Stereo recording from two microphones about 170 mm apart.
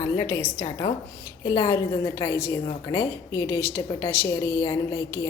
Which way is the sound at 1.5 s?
25° left (ahead or behind).